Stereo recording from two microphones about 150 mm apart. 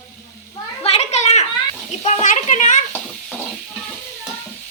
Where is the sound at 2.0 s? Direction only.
55° left (ahead or behind).